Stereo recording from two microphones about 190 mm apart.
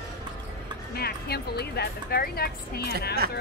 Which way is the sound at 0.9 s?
55° left (ahead or behind).